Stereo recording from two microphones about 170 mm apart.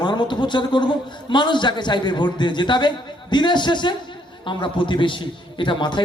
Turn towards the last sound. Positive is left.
turn(degrees=30)  # may be behind; listen again after turning